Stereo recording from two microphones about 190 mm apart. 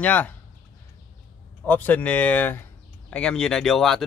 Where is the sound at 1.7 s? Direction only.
10° left (ahead or behind).